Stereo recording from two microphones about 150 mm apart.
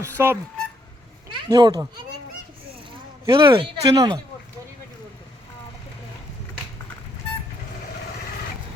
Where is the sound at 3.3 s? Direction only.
35° right (ahead or behind).